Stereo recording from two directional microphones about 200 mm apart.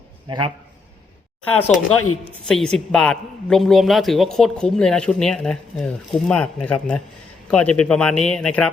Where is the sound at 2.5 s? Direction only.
5° left (ahead or behind).